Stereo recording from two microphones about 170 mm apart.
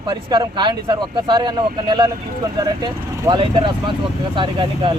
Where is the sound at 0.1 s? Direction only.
25° right (ahead or behind).